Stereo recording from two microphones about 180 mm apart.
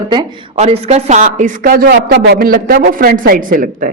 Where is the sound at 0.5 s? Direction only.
35° right (ahead or behind).